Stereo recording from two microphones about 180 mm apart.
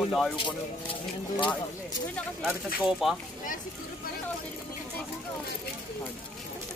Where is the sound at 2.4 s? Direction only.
Centre (ahead or behind).